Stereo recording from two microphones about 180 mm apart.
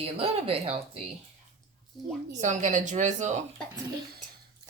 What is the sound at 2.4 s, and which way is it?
A woman's voice, 40° right (ahead or behind).